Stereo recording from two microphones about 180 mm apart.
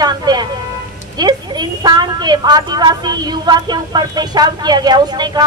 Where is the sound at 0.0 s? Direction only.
25° right (ahead or behind).